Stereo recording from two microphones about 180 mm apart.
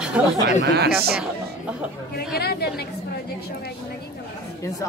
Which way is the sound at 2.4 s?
60° left (ahead or behind).